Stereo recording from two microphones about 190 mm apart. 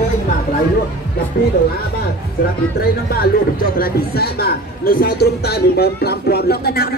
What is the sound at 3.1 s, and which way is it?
Speech, 50° left (ahead or behind).